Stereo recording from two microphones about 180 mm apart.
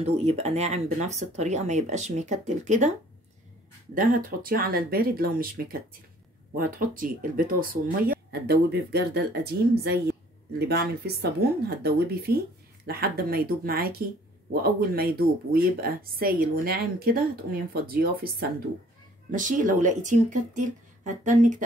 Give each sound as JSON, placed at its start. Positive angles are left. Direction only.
{"t": 0.0, "sound": "speech", "side_deg": -35}
{"t": 3.9, "sound": "speech", "side_deg": -50}
{"t": 8.1, "sound": "speech", "side_deg": -60}
{"t": 19.3, "sound": "speech", "side_deg": -45}